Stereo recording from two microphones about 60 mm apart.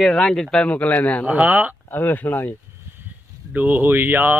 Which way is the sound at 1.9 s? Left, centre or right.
Left.